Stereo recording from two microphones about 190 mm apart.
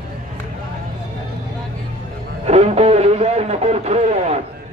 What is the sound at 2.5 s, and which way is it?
Music, 35° right (ahead or behind).